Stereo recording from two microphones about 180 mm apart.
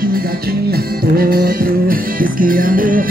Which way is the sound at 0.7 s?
55° right (ahead or behind).